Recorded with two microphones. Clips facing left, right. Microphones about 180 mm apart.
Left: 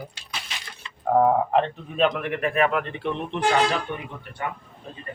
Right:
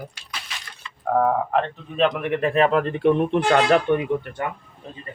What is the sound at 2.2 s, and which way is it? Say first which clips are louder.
Speech: right 3 dB; 25° right (ahead or behind).